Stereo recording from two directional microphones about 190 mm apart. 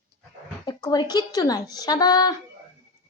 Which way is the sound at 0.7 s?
20° left (ahead or behind).